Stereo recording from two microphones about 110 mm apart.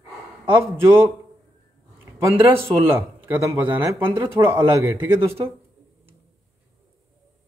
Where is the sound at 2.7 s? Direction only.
20° right (ahead or behind).